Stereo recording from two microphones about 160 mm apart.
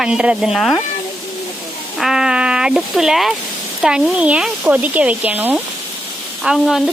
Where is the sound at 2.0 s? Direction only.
5° right (ahead or behind).